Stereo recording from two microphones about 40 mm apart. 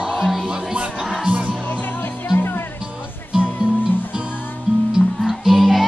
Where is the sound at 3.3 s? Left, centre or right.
Centre.